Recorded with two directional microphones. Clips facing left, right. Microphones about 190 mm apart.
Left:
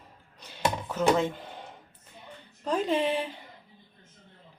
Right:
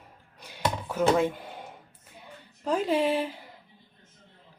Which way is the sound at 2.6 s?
5° right (ahead or behind).